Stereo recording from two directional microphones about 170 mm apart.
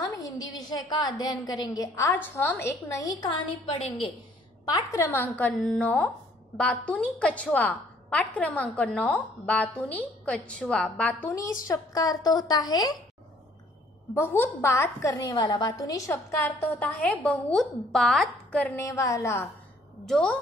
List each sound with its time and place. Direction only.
0.5 s a woman's voice: 25° left (ahead or behind)
4.6 s a woman's voice: 20° left (ahead or behind)
11.6 s a woman's voice: 20° left (ahead or behind)
14.1 s a woman's voice: 15° left (ahead or behind)
18.8 s a woman's voice: 20° left (ahead or behind)
20.1 s a woman's voice: 5° left (ahead or behind)